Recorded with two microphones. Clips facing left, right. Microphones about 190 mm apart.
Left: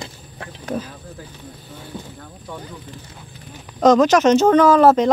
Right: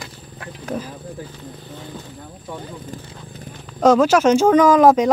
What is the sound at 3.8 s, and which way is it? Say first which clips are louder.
Speech: left 1 dB; 10° right (ahead or behind).